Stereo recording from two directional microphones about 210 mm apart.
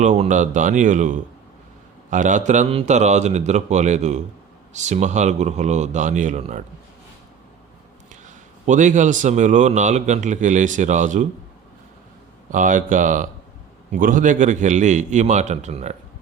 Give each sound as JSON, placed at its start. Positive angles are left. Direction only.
{"t": 0.0, "sound": "a man's voice", "side_deg": -35}
{"t": 8.6, "sound": "a man's voice", "side_deg": -35}
{"t": 12.5, "sound": "a man's voice", "side_deg": -40}